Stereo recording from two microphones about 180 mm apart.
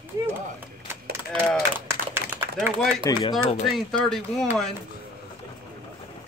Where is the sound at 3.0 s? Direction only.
20° left (ahead or behind).